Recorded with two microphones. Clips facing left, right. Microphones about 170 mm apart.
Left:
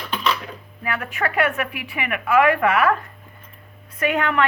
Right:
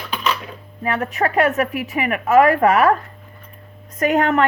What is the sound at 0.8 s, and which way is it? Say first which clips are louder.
A woman's voice: right 5 dB; 35° right (ahead or behind).